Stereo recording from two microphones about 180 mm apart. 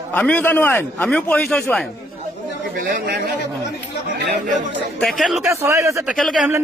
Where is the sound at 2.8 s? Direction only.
65° right (ahead or behind).